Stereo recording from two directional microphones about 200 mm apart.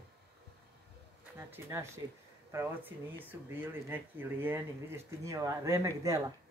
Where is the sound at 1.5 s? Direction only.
15° right (ahead or behind).